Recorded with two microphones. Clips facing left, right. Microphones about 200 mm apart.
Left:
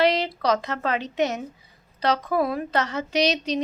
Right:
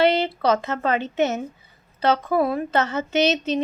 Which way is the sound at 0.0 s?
5° right (ahead or behind).